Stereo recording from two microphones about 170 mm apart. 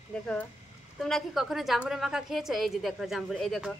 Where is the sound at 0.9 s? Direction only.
Centre (ahead or behind).